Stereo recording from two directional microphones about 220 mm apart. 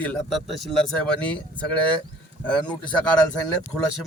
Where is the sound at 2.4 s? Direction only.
5° left (ahead or behind).